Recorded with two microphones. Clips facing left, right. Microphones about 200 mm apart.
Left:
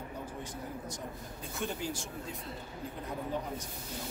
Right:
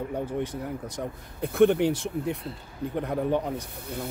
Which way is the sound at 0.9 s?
60° right (ahead or behind).